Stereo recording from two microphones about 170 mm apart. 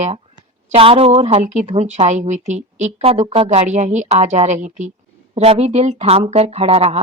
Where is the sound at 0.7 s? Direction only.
35° right (ahead or behind).